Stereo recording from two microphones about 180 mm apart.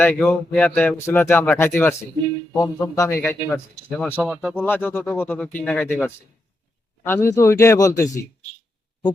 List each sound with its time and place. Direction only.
0.0 s speech: 10° left (ahead or behind)
4.1 s speech: 5° right (ahead or behind)
4.5 s speech: 10° left (ahead or behind)
7.0 s speech: 10° left (ahead or behind)